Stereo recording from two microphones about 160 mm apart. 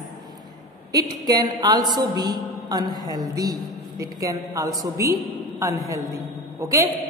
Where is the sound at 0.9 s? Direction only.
25° right (ahead or behind).